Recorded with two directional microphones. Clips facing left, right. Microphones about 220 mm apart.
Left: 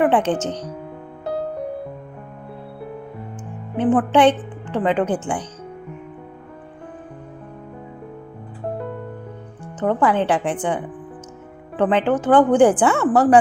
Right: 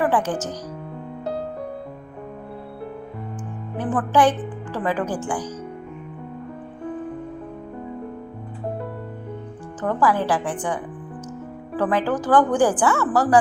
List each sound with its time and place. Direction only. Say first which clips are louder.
0.0 s a woman's voice: left 4 dB; 25° left (ahead or behind)
3.8 s a woman's voice: left 4 dB; 25° left (ahead or behind)
9.8 s a woman's voice: left 3 dB; 25° left (ahead or behind)